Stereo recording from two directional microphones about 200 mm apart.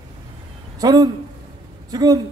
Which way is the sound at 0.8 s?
20° right (ahead or behind).